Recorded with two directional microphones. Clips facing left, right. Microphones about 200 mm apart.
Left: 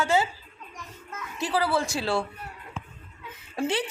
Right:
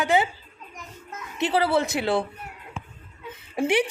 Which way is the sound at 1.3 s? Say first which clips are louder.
Right 4 dB; 25° right (ahead or behind).